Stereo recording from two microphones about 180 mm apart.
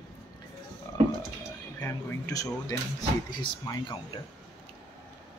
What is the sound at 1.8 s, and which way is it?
Speech, 15° left (ahead or behind).